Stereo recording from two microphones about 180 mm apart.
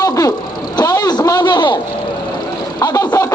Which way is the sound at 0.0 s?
20° left (ahead or behind).